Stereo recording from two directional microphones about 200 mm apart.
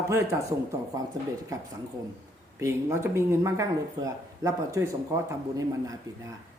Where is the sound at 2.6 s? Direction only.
15° right (ahead or behind).